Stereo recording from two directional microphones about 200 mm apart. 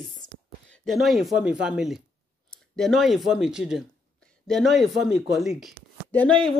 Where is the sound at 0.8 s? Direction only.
Centre (ahead or behind).